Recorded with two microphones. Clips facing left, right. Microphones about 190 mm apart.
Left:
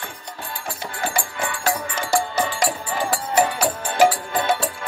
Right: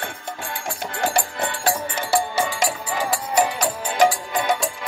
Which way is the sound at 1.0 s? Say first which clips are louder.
Right 3 dB; 40° right (ahead or behind).